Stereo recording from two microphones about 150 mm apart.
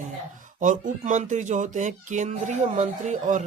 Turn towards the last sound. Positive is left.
turn(degrees=-55)  # may be behind; listen again after turning